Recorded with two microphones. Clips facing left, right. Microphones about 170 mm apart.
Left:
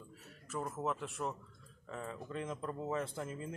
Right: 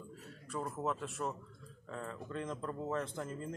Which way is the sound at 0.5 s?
Centre (ahead or behind).